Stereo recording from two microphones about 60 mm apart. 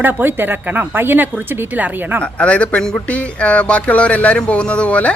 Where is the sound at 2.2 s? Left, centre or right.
Centre.